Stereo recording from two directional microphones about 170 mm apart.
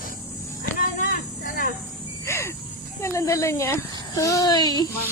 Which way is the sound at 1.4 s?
55° left (ahead or behind).